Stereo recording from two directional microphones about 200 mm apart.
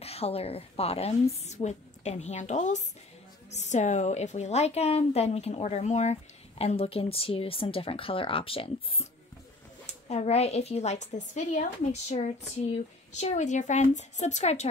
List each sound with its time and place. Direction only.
0.0 s a woman's voice: 30° left (ahead or behind)
10.0 s a woman's voice: 30° left (ahead or behind)